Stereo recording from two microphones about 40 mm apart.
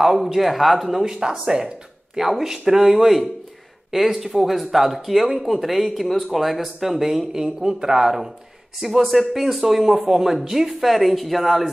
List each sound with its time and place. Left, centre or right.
0.0 s speech: centre